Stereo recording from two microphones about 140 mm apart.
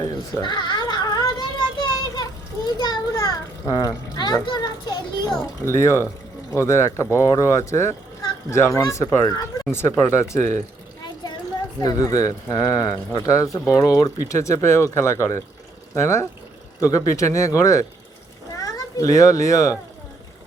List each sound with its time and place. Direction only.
0.0 s a sound: 30° left (ahead or behind)
4.4 s children playing: 30° left (ahead or behind)
5.6 s speech: 20° left (ahead or behind)
11.8 s a child's voice: 25° left (ahead or behind)